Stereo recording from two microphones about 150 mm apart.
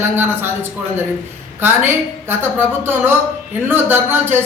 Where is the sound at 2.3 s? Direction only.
15° right (ahead or behind).